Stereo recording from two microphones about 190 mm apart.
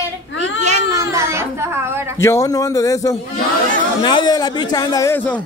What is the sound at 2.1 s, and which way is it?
A man's voice, 15° left (ahead or behind).